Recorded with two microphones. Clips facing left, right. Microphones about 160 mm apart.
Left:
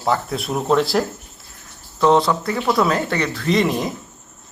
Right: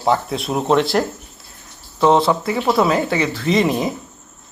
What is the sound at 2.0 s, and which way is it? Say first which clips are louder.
Speech: right 1 dB; 5° right (ahead or behind).